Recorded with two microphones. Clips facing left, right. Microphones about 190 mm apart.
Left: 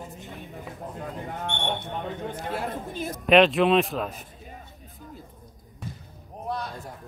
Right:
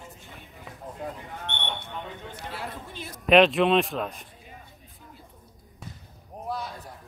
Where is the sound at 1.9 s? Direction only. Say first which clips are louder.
Left 6 dB; 50° left (ahead or behind).